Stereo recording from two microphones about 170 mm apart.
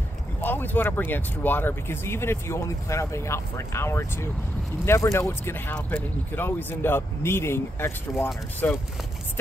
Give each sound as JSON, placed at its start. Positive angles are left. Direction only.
{"t": 0.4, "sound": "speech", "side_deg": 10}